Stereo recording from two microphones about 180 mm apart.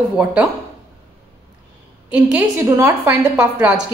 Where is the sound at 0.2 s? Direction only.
5° right (ahead or behind).